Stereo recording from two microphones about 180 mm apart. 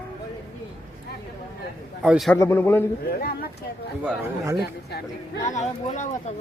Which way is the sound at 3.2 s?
55° left (ahead or behind).